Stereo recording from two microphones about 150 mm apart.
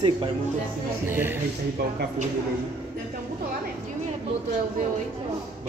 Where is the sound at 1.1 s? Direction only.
15° right (ahead or behind).